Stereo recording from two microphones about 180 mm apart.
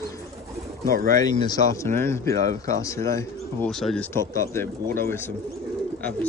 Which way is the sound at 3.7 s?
5° left (ahead or behind).